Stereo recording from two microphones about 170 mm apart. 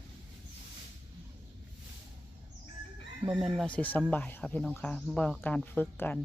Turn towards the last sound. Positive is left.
turn(degrees=10)  # may be behind; listen again after turning